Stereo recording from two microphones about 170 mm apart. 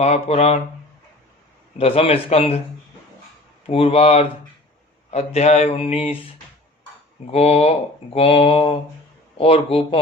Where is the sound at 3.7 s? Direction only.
35° left (ahead or behind).